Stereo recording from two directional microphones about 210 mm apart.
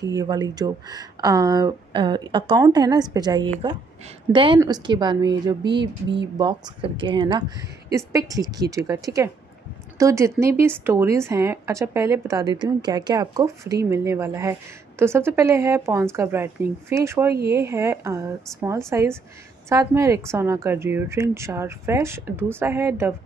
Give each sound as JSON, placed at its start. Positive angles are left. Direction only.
{"t": 0.0, "sound": "a woman's voice", "side_deg": -15}